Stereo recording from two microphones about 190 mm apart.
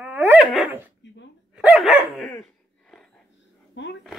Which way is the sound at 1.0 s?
70° left (ahead or behind).